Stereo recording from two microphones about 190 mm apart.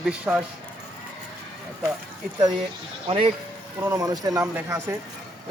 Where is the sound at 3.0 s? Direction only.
25° right (ahead or behind).